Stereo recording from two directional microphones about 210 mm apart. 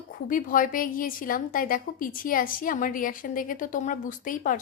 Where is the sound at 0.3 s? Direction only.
40° left (ahead or behind).